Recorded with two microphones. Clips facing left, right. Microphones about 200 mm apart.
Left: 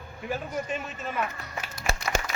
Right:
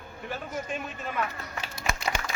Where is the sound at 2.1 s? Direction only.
45° left (ahead or behind).